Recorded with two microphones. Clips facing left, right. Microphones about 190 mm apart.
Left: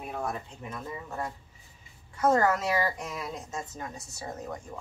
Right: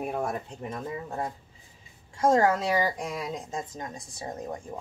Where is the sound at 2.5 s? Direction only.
30° right (ahead or behind).